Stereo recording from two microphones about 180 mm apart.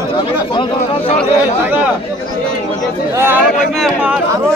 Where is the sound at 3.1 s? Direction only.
15° right (ahead or behind).